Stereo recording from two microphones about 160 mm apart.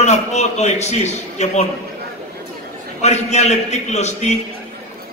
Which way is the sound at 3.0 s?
45° left (ahead or behind).